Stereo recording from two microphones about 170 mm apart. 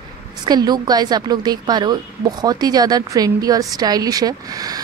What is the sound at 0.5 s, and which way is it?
Speech, 25° right (ahead or behind).